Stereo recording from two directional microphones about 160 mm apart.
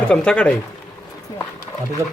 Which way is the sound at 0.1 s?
5° left (ahead or behind).